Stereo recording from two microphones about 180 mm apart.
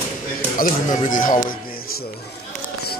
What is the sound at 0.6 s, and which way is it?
Speech, 45° left (ahead or behind).